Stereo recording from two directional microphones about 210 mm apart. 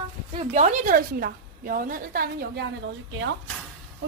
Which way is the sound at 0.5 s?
35° right (ahead or behind).